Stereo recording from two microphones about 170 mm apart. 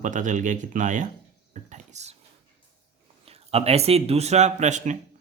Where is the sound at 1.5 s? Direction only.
45° right (ahead or behind).